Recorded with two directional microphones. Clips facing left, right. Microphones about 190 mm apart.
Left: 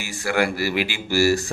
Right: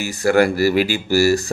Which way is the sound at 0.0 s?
40° right (ahead or behind).